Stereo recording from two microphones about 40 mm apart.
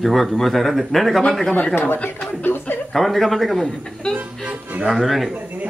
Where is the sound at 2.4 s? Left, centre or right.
Left.